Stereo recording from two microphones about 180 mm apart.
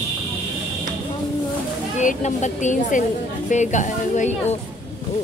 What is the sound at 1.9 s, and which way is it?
Speech, 40° left (ahead or behind).